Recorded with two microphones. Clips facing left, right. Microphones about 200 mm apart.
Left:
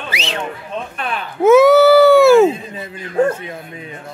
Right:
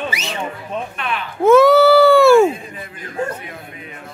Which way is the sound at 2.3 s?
20° left (ahead or behind).